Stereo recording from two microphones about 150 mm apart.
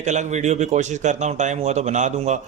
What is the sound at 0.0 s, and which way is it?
A man's voice, 50° right (ahead or behind).